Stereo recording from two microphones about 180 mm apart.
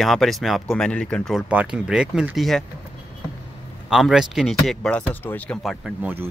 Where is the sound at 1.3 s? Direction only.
5° right (ahead or behind).